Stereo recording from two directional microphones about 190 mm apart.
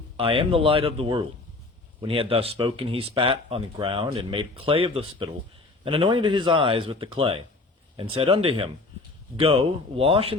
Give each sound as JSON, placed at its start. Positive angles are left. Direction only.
{"t": 0.2, "sound": "speech", "side_deg": -30}